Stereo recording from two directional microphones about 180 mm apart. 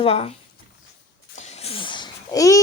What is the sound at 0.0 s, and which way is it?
Speech, 35° left (ahead or behind).